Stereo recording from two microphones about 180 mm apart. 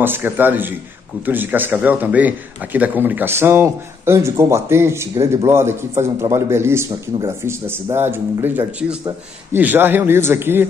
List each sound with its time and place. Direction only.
0.0 s a man's voice: 10° right (ahead or behind)